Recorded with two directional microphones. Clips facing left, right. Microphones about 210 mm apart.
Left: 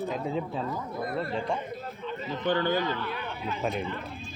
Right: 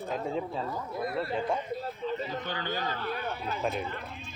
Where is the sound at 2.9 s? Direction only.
40° right (ahead or behind).